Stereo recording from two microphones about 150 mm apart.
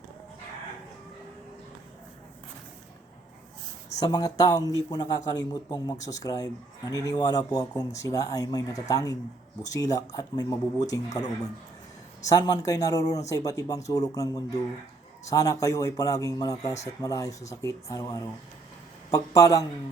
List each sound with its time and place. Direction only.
4.0 s speech: 25° left (ahead or behind)
12.3 s speech: 25° left (ahead or behind)